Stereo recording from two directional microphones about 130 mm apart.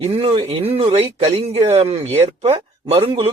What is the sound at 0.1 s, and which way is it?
Speech, 50° right (ahead or behind).